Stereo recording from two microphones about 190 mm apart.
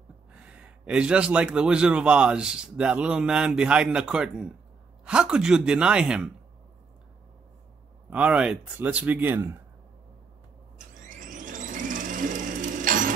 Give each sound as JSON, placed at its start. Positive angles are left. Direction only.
{"t": 0.3, "sound": "a man's voice", "side_deg": -5}
{"t": 8.1, "sound": "speech", "side_deg": -5}
{"t": 11.0, "sound": "vehicle", "side_deg": -45}